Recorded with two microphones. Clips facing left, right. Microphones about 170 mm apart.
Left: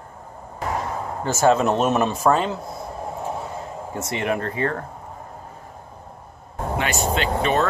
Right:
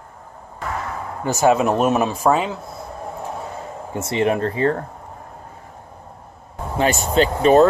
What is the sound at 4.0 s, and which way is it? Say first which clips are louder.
Speech: right 6 dB; 30° right (ahead or behind).